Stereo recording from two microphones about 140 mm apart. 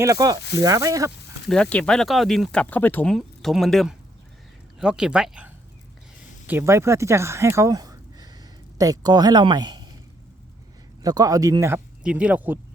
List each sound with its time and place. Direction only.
0.0 s speech: 25° right (ahead or behind)
1.5 s speech: 10° left (ahead or behind)
3.2 s speech: centre (ahead or behind)
6.5 s speech: 15° right (ahead or behind)
11.0 s speech: 25° right (ahead or behind)
12.0 s speech: 10° right (ahead or behind)